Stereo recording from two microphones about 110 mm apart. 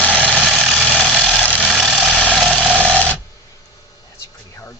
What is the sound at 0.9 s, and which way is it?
Ratchet, 5° left (ahead or behind).